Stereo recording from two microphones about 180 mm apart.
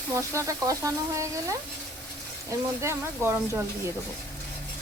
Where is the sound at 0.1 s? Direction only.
15° right (ahead or behind).